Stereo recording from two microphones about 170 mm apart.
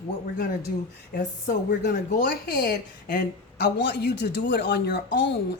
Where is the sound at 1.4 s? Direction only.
65° left (ahead or behind).